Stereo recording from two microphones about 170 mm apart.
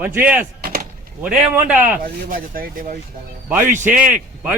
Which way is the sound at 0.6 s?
60° right (ahead or behind).